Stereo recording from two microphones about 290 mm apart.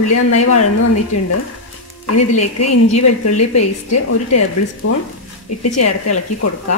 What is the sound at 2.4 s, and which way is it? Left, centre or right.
A woman's voice, left.